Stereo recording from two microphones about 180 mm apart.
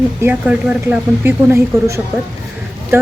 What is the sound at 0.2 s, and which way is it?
A woman's voice, 10° right (ahead or behind).